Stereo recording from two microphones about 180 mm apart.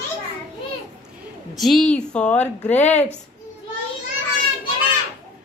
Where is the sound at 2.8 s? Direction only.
40° left (ahead or behind).